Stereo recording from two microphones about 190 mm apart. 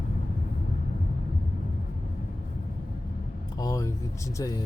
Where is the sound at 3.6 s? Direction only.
20° left (ahead or behind).